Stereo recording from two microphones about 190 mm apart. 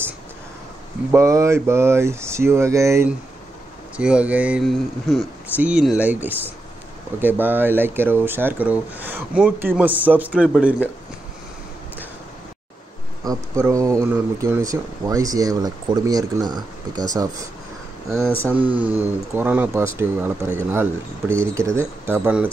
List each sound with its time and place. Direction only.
1.1 s speech: 15° right (ahead or behind)
13.7 s speech: 15° right (ahead or behind)
18.2 s speech: 10° left (ahead or behind)
18.5 s speech: 10° right (ahead or behind)